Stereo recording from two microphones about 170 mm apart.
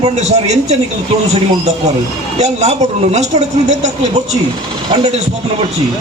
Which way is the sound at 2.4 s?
40° right (ahead or behind).